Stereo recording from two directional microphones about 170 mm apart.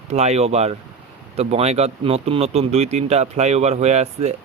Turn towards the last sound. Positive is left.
turn(degrees=-40)  # may be behind; listen again after turning